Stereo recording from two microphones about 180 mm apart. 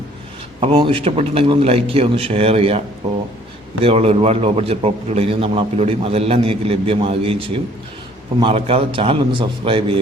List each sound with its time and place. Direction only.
0.6 s a man's voice: 30° right (ahead or behind)
3.8 s a man's voice: 35° right (ahead or behind)